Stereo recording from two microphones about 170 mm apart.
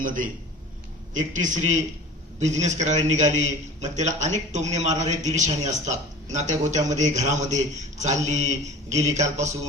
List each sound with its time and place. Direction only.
0.0 s a man's voice: 50° right (ahead or behind)